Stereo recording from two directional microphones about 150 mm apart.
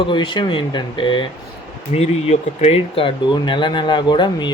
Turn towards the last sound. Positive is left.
turn(degrees=30)  # may be behind; listen again after turning